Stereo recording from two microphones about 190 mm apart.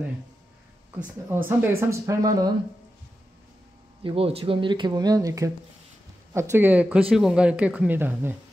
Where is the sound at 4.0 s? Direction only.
30° right (ahead or behind); by 8.4 s 10° right (ahead or behind).